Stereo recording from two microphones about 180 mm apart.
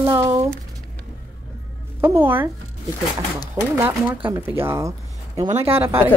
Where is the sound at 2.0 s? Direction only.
10° right (ahead or behind).